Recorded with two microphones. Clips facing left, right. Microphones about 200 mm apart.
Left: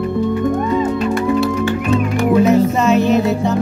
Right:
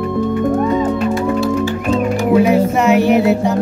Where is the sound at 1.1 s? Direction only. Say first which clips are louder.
Even; 60° left (ahead or behind).